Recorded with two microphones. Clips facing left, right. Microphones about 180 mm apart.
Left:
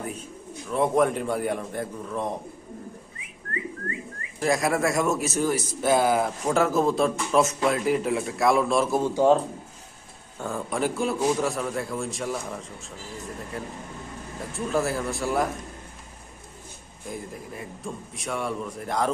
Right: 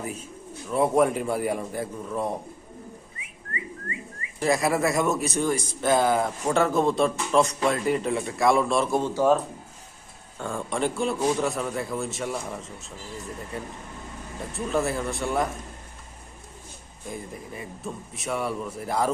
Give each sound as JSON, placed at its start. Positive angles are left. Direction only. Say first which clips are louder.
{"t": 0.7, "sound": "a man's voice", "louder": "right 1 dB", "side_deg": -5}
{"t": 4.4, "sound": "speech", "louder": "even", "side_deg": 0}
{"t": 10.3, "sound": "speech", "louder": "even", "side_deg": 5}
{"t": 17.1, "sound": "speech", "louder": "even", "side_deg": 0}